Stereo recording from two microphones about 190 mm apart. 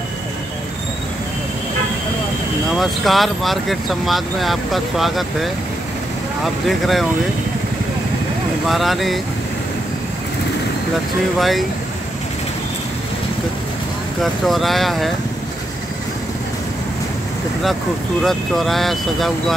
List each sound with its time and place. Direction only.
2.8 s speech: centre (ahead or behind)
8.6 s speech: centre (ahead or behind)
11.3 s speech: centre (ahead or behind)
14.2 s speech: centre (ahead or behind)
18.2 s speech: centre (ahead or behind)